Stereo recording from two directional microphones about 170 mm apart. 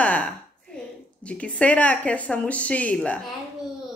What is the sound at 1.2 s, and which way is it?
A woman's voice, 5° left (ahead or behind).